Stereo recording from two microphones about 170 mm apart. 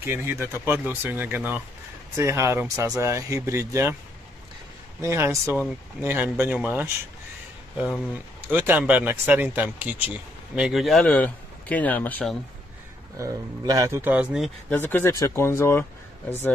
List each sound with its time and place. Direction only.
0.0 s speech: 15° right (ahead or behind)
5.0 s speech: 15° right (ahead or behind); by 12.4 s 10° left (ahead or behind)
13.2 s speech: 20° right (ahead or behind)
14.7 s speech: 10° left (ahead or behind)